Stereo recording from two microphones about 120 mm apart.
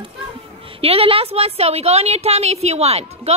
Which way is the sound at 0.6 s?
50° right (ahead or behind).